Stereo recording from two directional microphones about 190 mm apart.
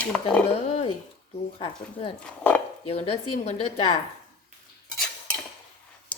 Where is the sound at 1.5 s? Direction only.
30° left (ahead or behind).